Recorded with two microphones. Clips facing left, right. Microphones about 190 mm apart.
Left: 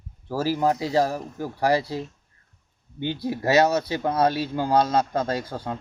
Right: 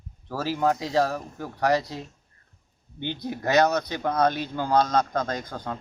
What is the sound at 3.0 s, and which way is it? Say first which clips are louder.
Speech: left 4 dB; 5° left (ahead or behind).